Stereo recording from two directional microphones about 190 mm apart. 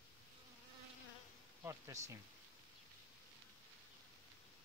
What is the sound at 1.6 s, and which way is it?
Speech, 15° right (ahead or behind).